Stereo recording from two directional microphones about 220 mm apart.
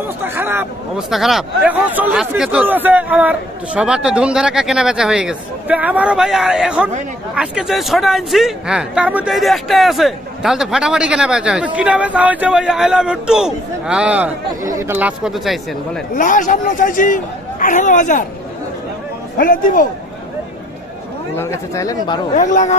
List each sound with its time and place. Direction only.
0.2 s a man's voice: 10° right (ahead or behind)
16.2 s a man's voice: 35° left (ahead or behind)
19.3 s a man's voice: 40° left (ahead or behind)
21.4 s speech: 15° left (ahead or behind)
22.3 s a man's voice: 35° left (ahead or behind)